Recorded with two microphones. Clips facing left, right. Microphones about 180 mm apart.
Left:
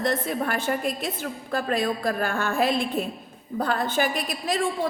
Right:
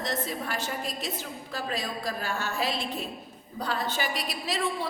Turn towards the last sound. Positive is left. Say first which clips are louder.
# left 5 dB
turn(degrees=50)  # may be behind; listen again after turning